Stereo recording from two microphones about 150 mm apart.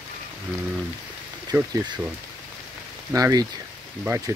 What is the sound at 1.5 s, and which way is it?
Speech, 15° right (ahead or behind).